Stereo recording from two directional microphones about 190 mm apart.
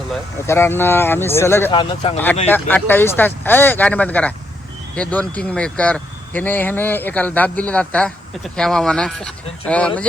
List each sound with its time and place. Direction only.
0.4 s speech: 15° left (ahead or behind)
1.7 s speech: 25° left (ahead or behind)
2.5 s speech: 10° left (ahead or behind)